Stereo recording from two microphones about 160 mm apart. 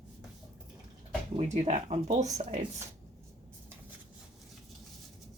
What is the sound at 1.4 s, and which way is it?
Speech, 45° right (ahead or behind).